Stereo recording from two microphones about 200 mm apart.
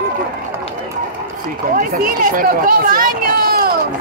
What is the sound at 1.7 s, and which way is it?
Speech, 45° right (ahead or behind).